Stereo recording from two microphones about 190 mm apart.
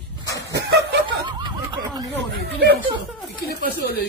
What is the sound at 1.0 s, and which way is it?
Speech, 25° right (ahead or behind).